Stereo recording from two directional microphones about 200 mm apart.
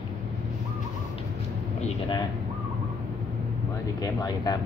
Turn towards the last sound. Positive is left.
turn(degrees=20)  # may be behind; listen again after turning